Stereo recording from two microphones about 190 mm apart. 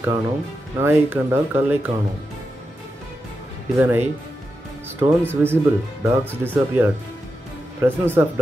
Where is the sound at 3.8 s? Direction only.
10° right (ahead or behind).